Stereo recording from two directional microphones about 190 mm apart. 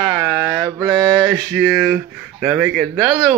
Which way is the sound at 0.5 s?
15° right (ahead or behind).